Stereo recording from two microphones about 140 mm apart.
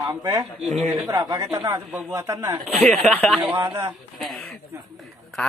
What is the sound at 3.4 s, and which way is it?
Speech, 15° right (ahead or behind).